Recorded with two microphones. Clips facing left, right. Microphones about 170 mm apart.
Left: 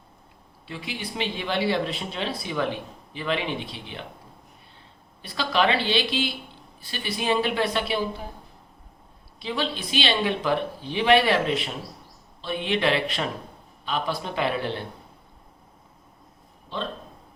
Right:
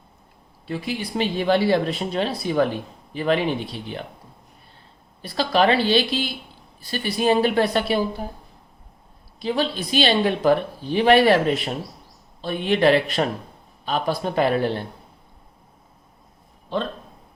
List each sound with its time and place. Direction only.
0.7 s speech: 45° right (ahead or behind)
5.2 s a woman's voice: 40° right (ahead or behind)
9.4 s speech: 45° right (ahead or behind)
16.7 s speech: 50° right (ahead or behind)